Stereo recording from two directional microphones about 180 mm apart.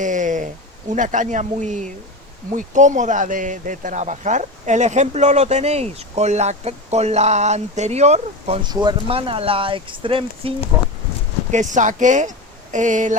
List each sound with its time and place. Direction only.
0.0 s speech: 45° right (ahead or behind)
11.5 s speech: 45° right (ahead or behind)